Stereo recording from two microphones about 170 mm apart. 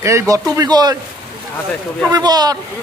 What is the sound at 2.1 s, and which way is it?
Speech, 20° right (ahead or behind).